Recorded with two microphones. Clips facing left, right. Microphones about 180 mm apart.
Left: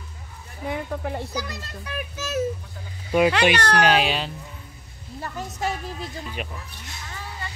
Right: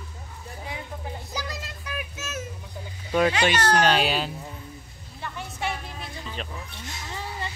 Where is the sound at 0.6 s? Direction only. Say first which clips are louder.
Left 9 dB; 55° left (ahead or behind).